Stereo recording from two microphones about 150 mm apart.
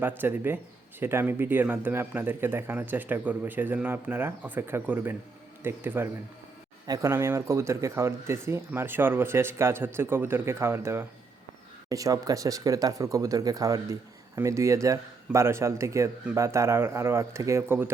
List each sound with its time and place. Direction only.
0.0 s speech: 15° right (ahead or behind)